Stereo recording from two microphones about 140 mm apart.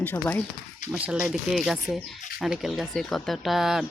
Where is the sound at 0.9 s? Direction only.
5° right (ahead or behind).